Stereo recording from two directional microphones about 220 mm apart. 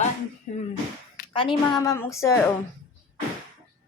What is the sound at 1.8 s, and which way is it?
Speech, 15° left (ahead or behind).